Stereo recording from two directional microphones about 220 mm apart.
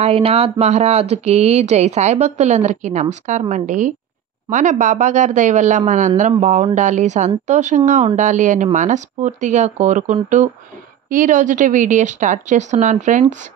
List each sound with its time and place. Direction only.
0.0 s speech: 25° right (ahead or behind)